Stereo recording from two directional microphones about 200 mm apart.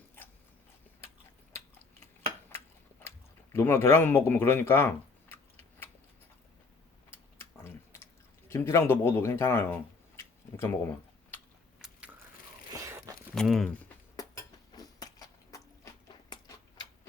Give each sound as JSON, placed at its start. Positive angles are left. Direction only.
{"t": 3.5, "sound": "speech", "side_deg": 10}
{"t": 8.4, "sound": "speech", "side_deg": 15}
{"t": 11.8, "sound": "biting", "side_deg": -5}
{"t": 12.7, "sound": "a sound", "side_deg": -15}
{"t": 13.3, "sound": "speech", "side_deg": 0}
{"t": 14.8, "sound": "a sound", "side_deg": 20}